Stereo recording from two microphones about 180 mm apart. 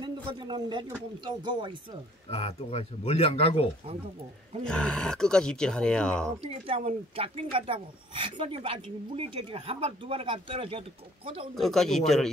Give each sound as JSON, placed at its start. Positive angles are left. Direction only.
{"t": 0.0, "sound": "speech", "side_deg": -25}
{"t": 2.2, "sound": "speech", "side_deg": 35}
{"t": 4.6, "sound": "speech", "side_deg": 5}
{"t": 6.4, "sound": "speech", "side_deg": -35}
{"t": 11.5, "sound": "speech", "side_deg": 0}